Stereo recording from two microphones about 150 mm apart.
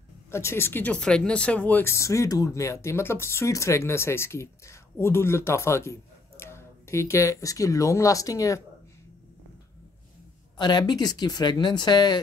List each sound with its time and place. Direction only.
0.3 s speech: 15° left (ahead or behind)
10.6 s speech: 30° left (ahead or behind)